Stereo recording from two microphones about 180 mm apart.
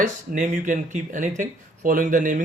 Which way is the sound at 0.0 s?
45° right (ahead or behind).